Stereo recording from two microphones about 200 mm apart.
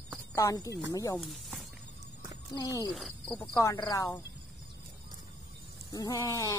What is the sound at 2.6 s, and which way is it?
Speech, 20° left (ahead or behind).